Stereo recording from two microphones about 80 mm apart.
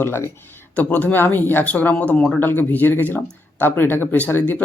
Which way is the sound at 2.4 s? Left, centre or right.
Left.